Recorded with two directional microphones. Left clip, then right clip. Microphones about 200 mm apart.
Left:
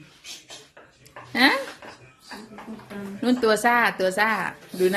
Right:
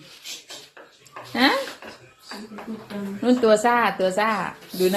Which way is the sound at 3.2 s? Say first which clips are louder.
Right 3 dB; 15° left (ahead or behind).